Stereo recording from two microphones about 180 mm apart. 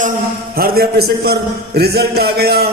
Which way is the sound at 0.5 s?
60° right (ahead or behind).